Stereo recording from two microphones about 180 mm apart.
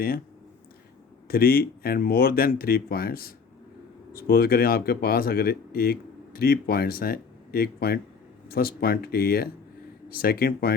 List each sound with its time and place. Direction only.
1.3 s speech: 55° left (ahead or behind)